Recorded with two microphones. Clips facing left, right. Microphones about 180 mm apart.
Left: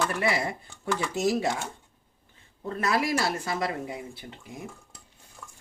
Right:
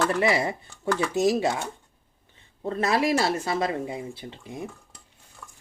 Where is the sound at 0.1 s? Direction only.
25° right (ahead or behind).